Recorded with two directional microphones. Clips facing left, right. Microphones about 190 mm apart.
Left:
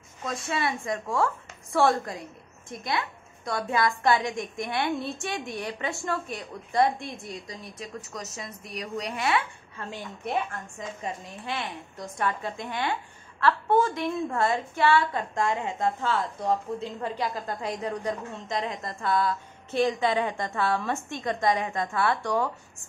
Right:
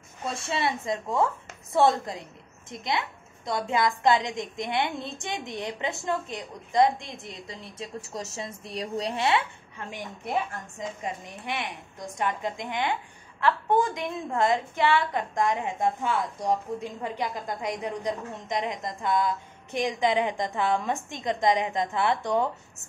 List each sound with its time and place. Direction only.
0.2 s a woman's voice: 25° right (ahead or behind)